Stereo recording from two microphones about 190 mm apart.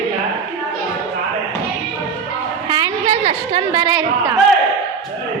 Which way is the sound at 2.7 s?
25° right (ahead or behind).